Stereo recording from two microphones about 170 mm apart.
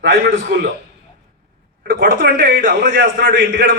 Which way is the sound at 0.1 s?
70° right (ahead or behind).